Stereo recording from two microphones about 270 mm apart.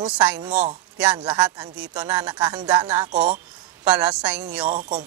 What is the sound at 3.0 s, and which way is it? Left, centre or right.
Speech, right.